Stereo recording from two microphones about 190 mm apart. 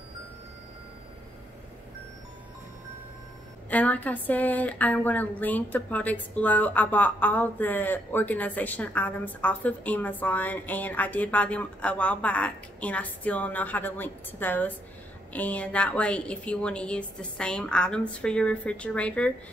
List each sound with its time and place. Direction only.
3.7 s a woman's voice: 10° left (ahead or behind)